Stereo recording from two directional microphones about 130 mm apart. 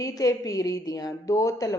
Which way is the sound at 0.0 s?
25° left (ahead or behind).